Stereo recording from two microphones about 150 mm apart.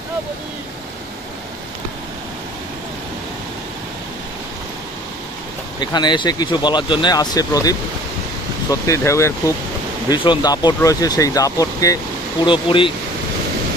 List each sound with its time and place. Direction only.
5.8 s speech: 30° left (ahead or behind)
10.0 s speech: 30° left (ahead or behind)
12.4 s speech: 35° left (ahead or behind)